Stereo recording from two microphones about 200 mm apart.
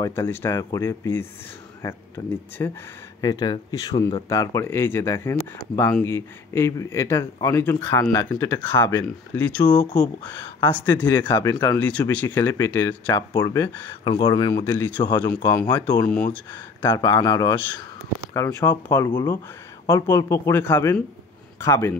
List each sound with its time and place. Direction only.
0.0 s speech: 15° left (ahead or behind)
11.8 s speech: 5° left (ahead or behind)
16.9 s speech: 20° left (ahead or behind)